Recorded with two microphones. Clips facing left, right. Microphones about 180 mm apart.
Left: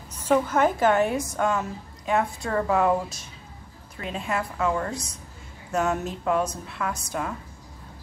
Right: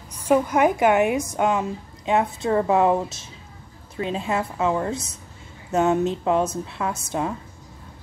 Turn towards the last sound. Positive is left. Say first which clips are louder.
# right 4 dB
turn(degrees=-25)  # may be behind; listen again after turning